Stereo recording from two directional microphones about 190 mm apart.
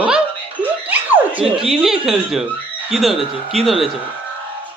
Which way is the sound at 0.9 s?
10° right (ahead or behind).